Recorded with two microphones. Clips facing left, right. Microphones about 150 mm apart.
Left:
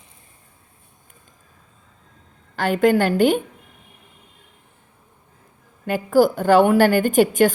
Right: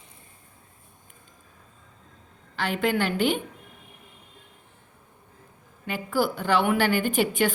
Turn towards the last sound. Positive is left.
turn(degrees=45)  # may be behind; listen again after turning